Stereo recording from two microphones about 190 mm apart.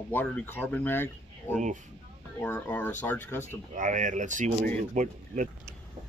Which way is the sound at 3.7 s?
40° right (ahead or behind).